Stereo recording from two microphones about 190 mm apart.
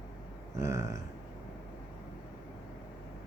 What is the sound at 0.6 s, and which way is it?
Speech, 15° right (ahead or behind).